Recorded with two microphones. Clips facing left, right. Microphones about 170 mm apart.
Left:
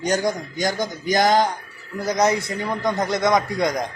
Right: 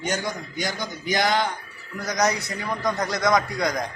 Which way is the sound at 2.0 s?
25° left (ahead or behind).